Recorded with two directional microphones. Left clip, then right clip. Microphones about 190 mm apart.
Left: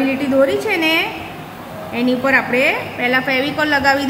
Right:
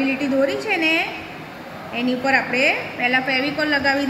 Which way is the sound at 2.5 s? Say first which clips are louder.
Left 3 dB; 50° left (ahead or behind).